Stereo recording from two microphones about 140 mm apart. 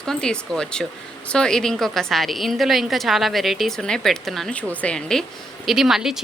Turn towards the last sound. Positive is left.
turn(degrees=-5)  # may be behind; listen again after turning